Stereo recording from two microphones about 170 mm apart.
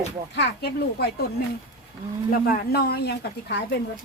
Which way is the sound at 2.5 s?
65° left (ahead or behind).